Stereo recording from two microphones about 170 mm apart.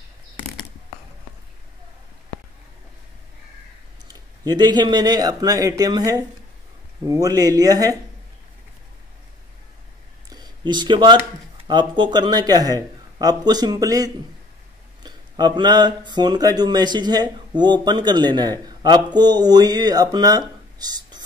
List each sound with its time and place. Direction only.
4.1 s speech: 25° right (ahead or behind)
10.3 s a sound: 25° right (ahead or behind)
11.6 s speech: 25° right (ahead or behind)